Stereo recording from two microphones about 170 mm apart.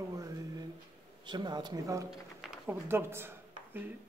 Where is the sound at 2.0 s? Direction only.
5° right (ahead or behind).